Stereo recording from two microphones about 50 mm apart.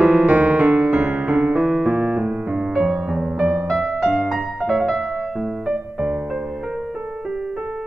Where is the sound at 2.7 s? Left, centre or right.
Centre.